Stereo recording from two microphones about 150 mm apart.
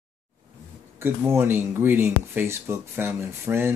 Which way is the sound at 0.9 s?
15° right (ahead or behind).